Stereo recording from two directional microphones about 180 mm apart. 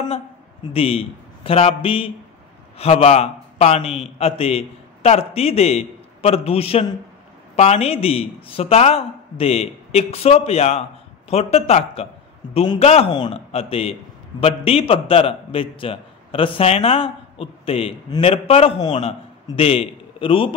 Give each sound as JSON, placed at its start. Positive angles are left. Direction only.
{"t": 0.7, "sound": "a man's voice", "side_deg": 30}